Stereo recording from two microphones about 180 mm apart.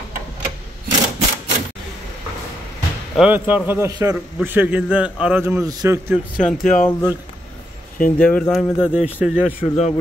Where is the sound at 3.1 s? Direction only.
5° right (ahead or behind).